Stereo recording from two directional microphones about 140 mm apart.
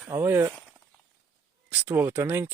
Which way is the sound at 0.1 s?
20° right (ahead or behind).